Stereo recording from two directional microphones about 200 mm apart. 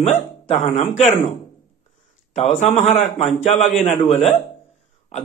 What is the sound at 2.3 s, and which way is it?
A man's voice, 35° left (ahead or behind).